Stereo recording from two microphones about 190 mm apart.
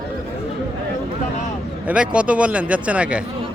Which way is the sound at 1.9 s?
5° right (ahead or behind).